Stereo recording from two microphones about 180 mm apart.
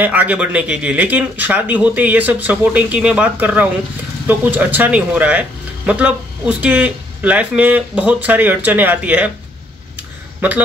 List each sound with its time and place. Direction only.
0.0 s speech: 10° right (ahead or behind)